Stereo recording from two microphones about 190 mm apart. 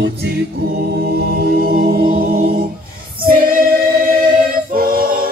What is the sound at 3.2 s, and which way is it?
Choir, 50° right (ahead or behind).